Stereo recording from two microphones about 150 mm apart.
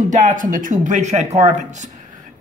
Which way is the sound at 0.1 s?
65° right (ahead or behind).